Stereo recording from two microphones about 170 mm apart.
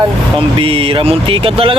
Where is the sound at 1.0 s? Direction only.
35° right (ahead or behind).